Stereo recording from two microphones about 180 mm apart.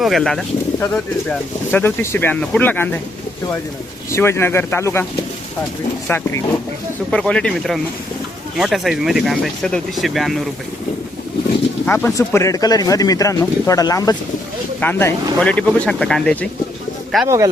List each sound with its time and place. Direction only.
0.0 s speech: centre (ahead or behind)
4.1 s speech: 15° left (ahead or behind)
6.1 s speech: 10° left (ahead or behind)
11.9 s speech: 10° left (ahead or behind)
17.2 s speech: 20° right (ahead or behind)